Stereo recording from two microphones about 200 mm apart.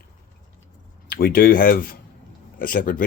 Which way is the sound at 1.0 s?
50° left (ahead or behind).